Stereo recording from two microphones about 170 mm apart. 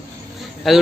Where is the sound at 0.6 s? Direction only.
Centre (ahead or behind).